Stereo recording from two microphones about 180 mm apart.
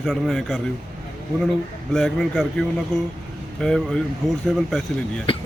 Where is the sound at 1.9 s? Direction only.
Centre (ahead or behind).